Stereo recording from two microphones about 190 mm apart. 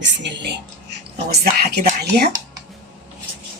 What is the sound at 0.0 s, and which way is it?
Speech, 65° right (ahead or behind).